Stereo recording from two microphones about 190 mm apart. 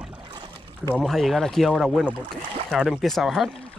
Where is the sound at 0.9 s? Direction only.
Centre (ahead or behind).